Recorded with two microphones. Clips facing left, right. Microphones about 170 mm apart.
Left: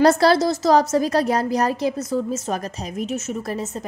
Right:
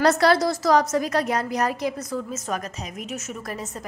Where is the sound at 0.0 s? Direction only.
30° left (ahead or behind).